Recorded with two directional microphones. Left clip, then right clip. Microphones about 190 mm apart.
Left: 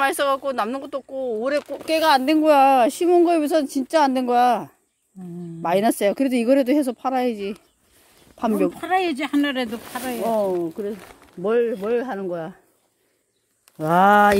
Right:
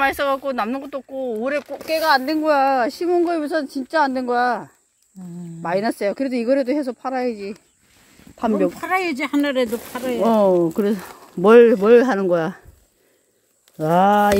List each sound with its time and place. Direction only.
0.0 s speech: 5° left (ahead or behind)
8.4 s speech: 5° right (ahead or behind)
8.7 s speech: 25° right (ahead or behind)
10.2 s speech: 75° right (ahead or behind)
11.4 s speech: 45° right (ahead or behind)
13.7 s speech: 10° right (ahead or behind)
14.0 s speech: 5° left (ahead or behind)